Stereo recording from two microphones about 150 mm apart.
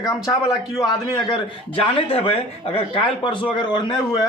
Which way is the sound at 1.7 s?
40° left (ahead or behind).